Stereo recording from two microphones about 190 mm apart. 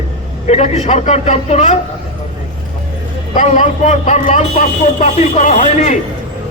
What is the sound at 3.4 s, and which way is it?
A man's voice, 40° left (ahead or behind).